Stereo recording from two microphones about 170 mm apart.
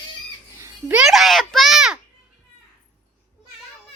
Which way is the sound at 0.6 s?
10° right (ahead or behind).